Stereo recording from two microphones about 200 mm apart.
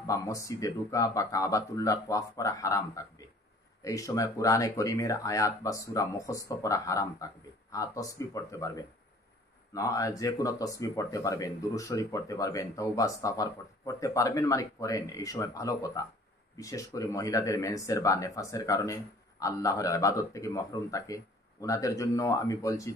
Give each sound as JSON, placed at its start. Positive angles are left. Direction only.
{"t": 0.0, "sound": "speech", "side_deg": 15}